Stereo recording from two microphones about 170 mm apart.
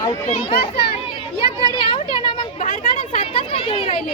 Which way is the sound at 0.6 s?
35° left (ahead or behind).